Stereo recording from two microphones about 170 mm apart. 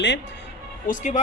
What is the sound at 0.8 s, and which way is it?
Speech, 45° left (ahead or behind).